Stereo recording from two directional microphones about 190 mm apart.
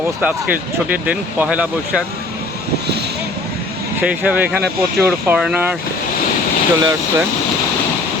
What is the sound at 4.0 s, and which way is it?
Speech, 10° right (ahead or behind).